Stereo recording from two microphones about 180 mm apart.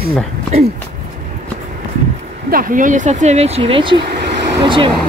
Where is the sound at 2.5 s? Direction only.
45° right (ahead or behind); by 4.9 s 25° right (ahead or behind).